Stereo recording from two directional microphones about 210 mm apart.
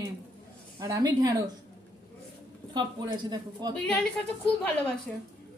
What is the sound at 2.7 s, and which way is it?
A woman's voice, 20° right (ahead or behind).